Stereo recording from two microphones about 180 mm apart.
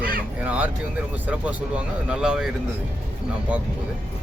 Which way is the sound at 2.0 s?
5° right (ahead or behind).